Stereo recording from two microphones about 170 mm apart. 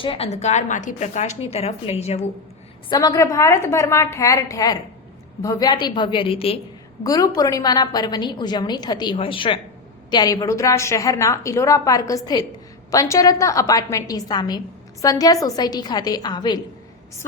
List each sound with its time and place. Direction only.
0.0 s a woman's voice: 35° left (ahead or behind)
2.9 s a woman's voice: 20° left (ahead or behind)
7.0 s a woman's voice: 20° left (ahead or behind)